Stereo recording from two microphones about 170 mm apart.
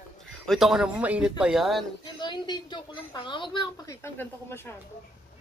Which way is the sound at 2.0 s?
25° left (ahead or behind).